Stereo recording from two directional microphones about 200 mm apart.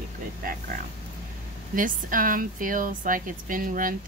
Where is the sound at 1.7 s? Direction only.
45° right (ahead or behind).